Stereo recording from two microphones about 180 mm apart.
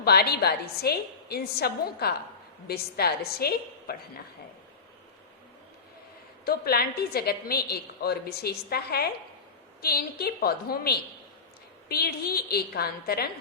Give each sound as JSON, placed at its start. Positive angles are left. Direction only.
{"t": 0.0, "sound": "a woman's voice", "side_deg": 60}
{"t": 6.4, "sound": "a woman's voice", "side_deg": 60}